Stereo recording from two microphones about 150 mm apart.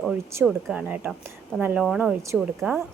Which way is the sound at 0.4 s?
5° right (ahead or behind).